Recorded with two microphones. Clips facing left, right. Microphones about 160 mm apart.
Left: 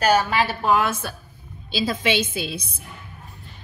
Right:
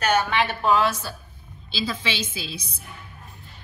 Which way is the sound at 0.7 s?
50° left (ahead or behind).